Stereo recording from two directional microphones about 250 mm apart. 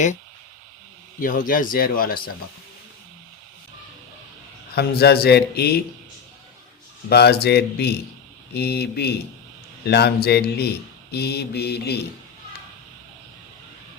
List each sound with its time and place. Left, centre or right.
1.2 s speech: left
4.7 s speech: left
7.1 s speech: left